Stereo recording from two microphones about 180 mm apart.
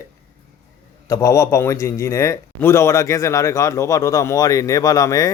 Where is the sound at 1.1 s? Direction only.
15° left (ahead or behind).